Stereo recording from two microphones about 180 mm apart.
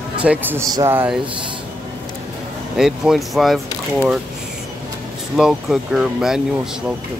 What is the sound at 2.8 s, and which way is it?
Speech, centre (ahead or behind).